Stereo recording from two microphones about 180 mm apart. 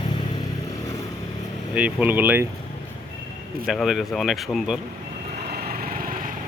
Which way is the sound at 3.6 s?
Centre (ahead or behind).